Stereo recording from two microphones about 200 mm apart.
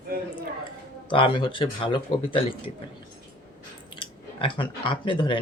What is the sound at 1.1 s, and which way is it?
Speech, 25° left (ahead or behind).